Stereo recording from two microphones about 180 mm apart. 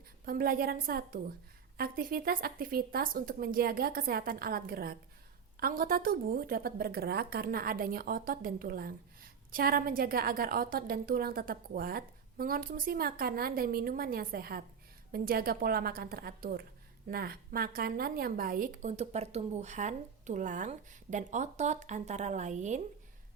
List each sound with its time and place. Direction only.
0.3 s a woman's voice: 55° right (ahead or behind)